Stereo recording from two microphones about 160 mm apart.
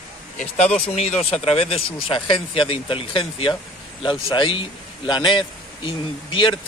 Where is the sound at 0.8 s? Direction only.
40° left (ahead or behind).